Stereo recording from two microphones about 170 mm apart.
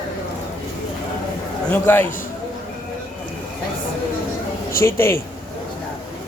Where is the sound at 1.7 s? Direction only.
10° left (ahead or behind).